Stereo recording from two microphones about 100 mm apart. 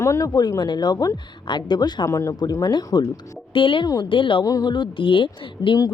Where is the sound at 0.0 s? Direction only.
35° left (ahead or behind).